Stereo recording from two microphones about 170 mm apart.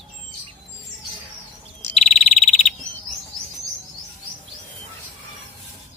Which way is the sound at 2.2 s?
40° left (ahead or behind).